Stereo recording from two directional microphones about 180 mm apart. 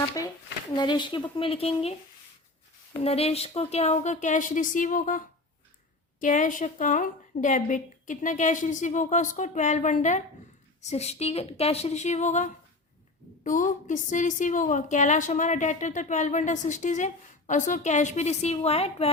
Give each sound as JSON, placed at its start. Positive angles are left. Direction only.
{"t": 0.8, "sound": "a woman's voice", "side_deg": 25}